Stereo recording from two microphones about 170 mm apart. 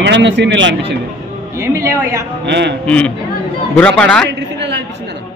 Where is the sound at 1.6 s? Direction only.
20° right (ahead or behind).